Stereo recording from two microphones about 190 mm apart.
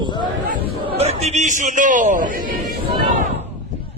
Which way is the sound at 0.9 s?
35° right (ahead or behind).